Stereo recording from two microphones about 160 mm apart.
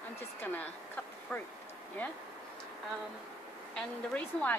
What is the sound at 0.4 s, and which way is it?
A woman's voice, 10° left (ahead or behind).